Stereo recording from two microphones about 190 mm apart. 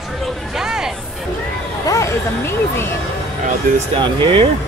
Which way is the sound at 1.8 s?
15° left (ahead or behind).